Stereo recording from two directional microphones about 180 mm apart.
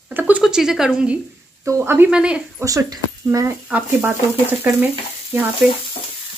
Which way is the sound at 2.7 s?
20° right (ahead or behind).